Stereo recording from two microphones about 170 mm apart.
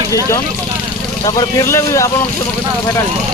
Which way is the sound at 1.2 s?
20° left (ahead or behind).